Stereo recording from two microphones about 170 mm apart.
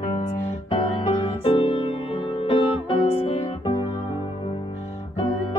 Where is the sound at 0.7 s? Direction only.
30° left (ahead or behind).